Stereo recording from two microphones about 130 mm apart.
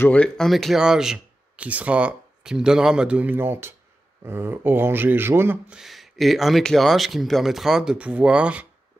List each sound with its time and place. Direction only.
0.0 s speech: 10° left (ahead or behind); by 5.6 s 15° right (ahead or behind)
5.7 s speech: centre (ahead or behind)